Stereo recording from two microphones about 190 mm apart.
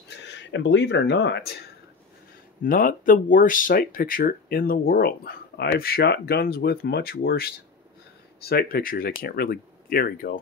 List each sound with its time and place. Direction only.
0.1 s speech: 70° left (ahead or behind)
2.6 s speech: 45° left (ahead or behind)